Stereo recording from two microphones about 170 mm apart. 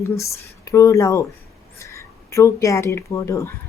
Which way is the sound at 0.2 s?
15° left (ahead or behind).